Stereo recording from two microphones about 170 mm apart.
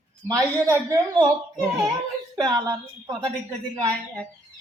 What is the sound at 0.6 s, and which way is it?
Speech, 20° right (ahead or behind).